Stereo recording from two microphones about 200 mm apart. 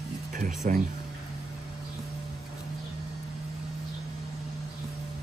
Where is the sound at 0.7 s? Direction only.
40° right (ahead or behind).